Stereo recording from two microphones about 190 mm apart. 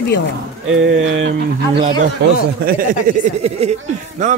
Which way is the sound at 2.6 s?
45° right (ahead or behind).